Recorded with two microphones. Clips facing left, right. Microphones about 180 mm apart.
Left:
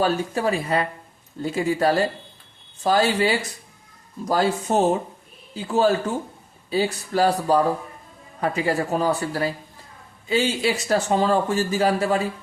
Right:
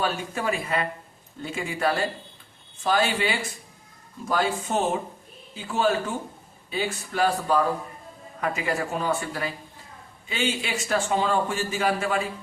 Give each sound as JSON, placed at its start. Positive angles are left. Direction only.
{"t": 0.0, "sound": "speech", "side_deg": 35}